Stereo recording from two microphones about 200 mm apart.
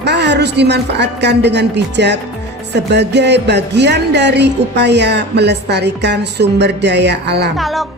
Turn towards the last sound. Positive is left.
turn(degrees=0)  # may be behind; listen again after turning